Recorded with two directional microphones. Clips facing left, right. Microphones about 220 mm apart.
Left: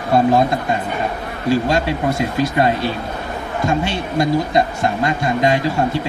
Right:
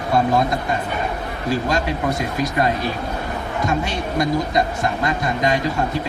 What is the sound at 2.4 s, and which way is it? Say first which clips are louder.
A man's voice: left 4 dB; 30° left (ahead or behind).